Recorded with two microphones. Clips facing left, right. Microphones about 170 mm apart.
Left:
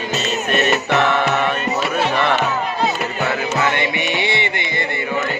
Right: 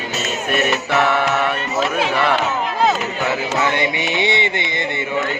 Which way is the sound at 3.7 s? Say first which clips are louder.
Right 1 dB; 20° right (ahead or behind).